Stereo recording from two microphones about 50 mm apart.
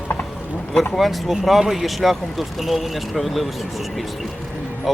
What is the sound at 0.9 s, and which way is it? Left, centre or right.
Speech, centre.